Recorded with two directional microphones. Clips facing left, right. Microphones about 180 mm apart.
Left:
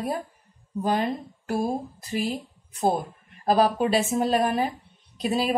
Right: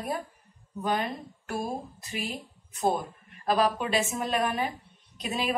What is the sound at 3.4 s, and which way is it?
A woman's voice, 35° left (ahead or behind).